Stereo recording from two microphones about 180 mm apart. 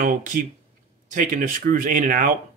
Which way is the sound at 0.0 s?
45° right (ahead or behind).